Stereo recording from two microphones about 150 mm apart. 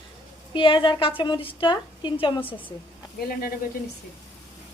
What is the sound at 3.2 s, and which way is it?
Speech, 85° left.